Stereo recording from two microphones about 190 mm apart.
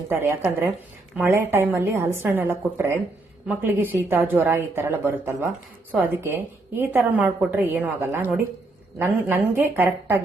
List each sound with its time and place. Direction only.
0.1 s a woman's voice: 15° right (ahead or behind)